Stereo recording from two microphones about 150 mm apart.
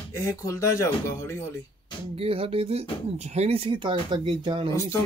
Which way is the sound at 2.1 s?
40° right (ahead or behind).